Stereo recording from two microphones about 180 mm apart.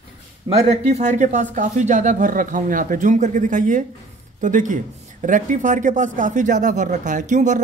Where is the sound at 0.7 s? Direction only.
40° right (ahead or behind).